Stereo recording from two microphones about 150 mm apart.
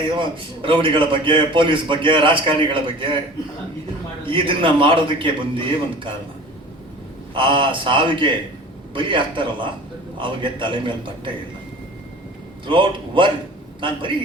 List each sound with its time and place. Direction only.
0.2 s a man's voice: 35° right (ahead or behind)
4.3 s a man's voice: 35° right (ahead or behind)
7.3 s a man's voice: 35° right (ahead or behind)
12.6 s a man's voice: 35° right (ahead or behind)